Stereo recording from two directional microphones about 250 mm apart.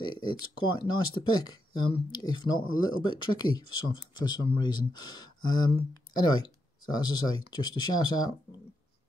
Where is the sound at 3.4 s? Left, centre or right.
Left.